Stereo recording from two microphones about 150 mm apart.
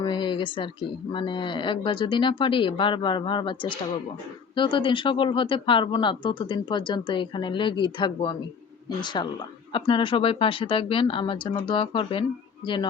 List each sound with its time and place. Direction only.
0.0 s speech: 30° left (ahead or behind)